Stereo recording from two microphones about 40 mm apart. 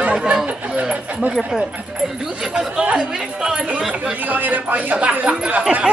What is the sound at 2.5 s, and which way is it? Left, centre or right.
Speech, right.